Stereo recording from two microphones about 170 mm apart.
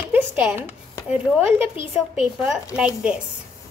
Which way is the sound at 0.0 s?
10° right (ahead or behind).